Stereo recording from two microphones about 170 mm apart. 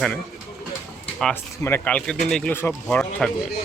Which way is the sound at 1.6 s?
10° left (ahead or behind).